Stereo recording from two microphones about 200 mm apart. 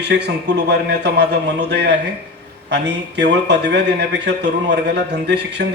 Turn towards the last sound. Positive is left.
turn(degrees=-60)  # may be behind; listen again after turning